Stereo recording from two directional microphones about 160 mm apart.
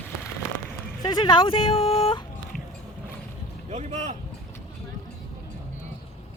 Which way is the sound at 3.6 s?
45° right (ahead or behind).